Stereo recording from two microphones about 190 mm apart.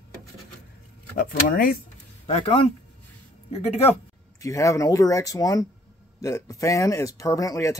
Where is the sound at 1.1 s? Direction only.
45° left (ahead or behind).